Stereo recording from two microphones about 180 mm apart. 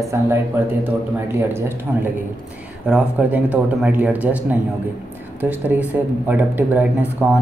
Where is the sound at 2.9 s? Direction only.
5° right (ahead or behind).